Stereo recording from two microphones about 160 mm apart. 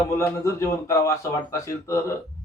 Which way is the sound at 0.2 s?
20° left (ahead or behind).